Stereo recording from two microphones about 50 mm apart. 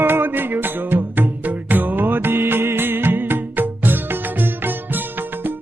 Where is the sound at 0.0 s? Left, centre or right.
Right.